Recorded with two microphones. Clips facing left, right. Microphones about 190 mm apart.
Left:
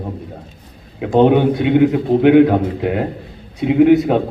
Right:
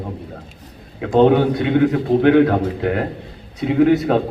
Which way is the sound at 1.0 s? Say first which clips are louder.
Left 1 dB; 20° left (ahead or behind).